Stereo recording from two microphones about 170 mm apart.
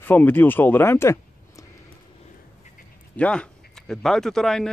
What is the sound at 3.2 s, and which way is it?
Speech, 5° left (ahead or behind).